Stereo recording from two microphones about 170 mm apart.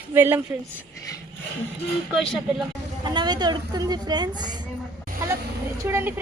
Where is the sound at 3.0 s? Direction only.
25° right (ahead or behind).